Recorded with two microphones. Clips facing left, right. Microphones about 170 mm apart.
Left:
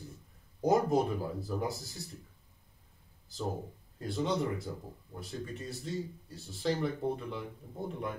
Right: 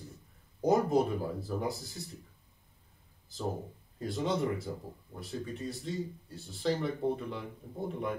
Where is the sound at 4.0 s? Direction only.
Centre (ahead or behind).